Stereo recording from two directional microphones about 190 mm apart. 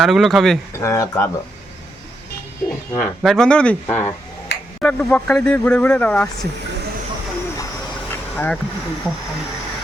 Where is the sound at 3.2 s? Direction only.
5° left (ahead or behind).